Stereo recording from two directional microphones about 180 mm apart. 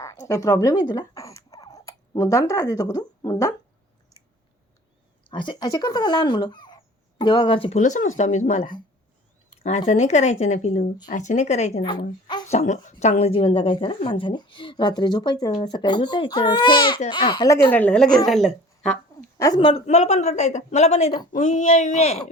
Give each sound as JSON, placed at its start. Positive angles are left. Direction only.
{"t": 0.0, "sound": "speech", "side_deg": 20}
{"t": 4.1, "sound": "chewing", "side_deg": 20}
{"t": 5.3, "sound": "speech", "side_deg": 25}
{"t": 7.8, "sound": "speech", "side_deg": 45}
{"t": 11.8, "sound": "a woman's voice", "side_deg": 25}
{"t": 12.5, "sound": "speech", "side_deg": 40}
{"t": 17.7, "sound": "speech", "side_deg": 10}
{"t": 19.4, "sound": "speech", "side_deg": 25}